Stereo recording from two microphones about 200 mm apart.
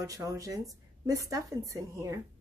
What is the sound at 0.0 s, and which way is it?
Speech, 15° right (ahead or behind).